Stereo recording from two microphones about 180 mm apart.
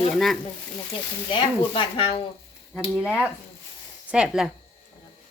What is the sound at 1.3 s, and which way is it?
Speech, 30° left (ahead or behind).